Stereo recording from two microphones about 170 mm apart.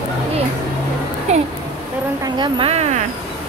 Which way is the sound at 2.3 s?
25° right (ahead or behind).